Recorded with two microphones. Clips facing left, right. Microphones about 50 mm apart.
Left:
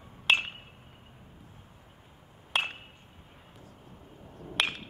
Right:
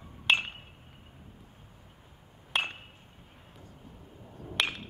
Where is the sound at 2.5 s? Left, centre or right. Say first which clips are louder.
Left 1 dB; centre.